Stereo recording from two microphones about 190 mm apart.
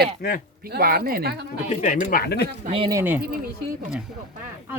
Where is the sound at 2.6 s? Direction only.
30° right (ahead or behind).